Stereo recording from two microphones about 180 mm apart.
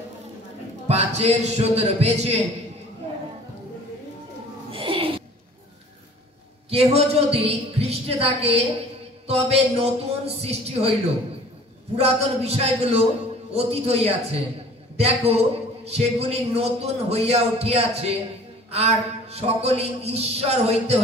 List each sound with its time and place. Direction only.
0.8 s a man's voice: 35° right (ahead or behind)
4.6 s a sound: 30° right (ahead or behind)
6.7 s a man's voice: 35° right (ahead or behind)
12.0 s a man's voice: 35° right (ahead or behind)